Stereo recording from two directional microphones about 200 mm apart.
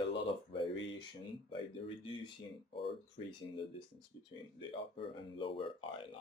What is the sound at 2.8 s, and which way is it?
Speech, 25° left (ahead or behind).